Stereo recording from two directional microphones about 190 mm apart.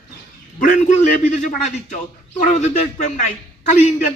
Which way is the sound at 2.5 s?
40° left (ahead or behind).